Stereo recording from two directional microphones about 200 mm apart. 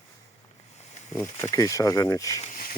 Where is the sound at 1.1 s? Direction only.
10° left (ahead or behind).